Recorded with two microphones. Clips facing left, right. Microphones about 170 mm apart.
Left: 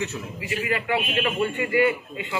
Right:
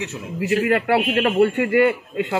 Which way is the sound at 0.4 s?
65° right (ahead or behind).